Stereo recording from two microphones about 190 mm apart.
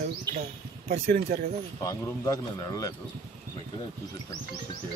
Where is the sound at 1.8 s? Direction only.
20° left (ahead or behind).